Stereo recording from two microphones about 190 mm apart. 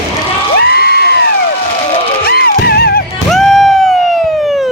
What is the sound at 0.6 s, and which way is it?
Cheering, 60° left (ahead or behind).